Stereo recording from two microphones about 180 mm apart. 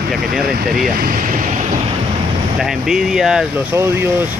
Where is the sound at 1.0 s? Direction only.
55° right (ahead or behind).